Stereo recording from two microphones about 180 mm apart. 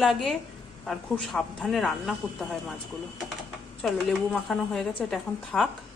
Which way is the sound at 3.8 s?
Centre (ahead or behind).